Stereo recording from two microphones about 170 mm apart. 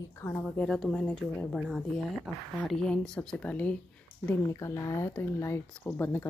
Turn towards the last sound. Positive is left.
turn(degrees=15)  # may be behind; listen again after turning